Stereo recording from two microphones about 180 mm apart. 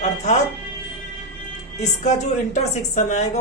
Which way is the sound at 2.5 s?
40° left (ahead or behind).